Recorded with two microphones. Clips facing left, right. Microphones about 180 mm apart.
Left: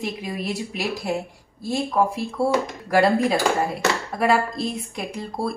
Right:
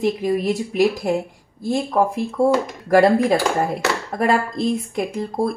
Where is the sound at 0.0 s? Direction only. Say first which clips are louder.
Right 9 dB; 45° right (ahead or behind).